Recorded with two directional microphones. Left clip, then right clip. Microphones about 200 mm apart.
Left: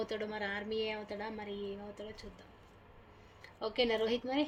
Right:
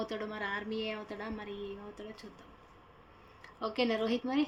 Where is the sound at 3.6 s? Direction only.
Centre (ahead or behind).